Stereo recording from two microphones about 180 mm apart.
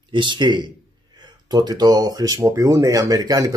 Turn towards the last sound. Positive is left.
turn(degrees=-20)  # may be behind; listen again after turning